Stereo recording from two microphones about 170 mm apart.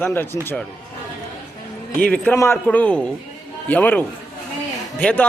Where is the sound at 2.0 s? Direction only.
10° left (ahead or behind).